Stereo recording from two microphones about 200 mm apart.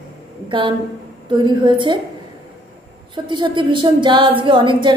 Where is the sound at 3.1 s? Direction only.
25° right (ahead or behind).